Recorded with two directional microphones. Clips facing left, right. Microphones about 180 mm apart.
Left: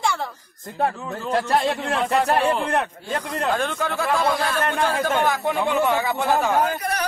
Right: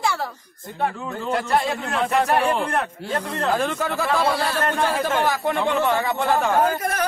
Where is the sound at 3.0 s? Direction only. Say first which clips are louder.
Right 1 dB; 70° right (ahead or behind).